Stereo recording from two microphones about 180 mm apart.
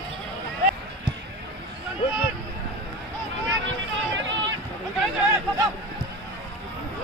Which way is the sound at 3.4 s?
90° right.